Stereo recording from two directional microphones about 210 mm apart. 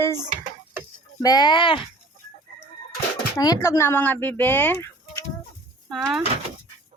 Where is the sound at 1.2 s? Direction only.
20° left (ahead or behind).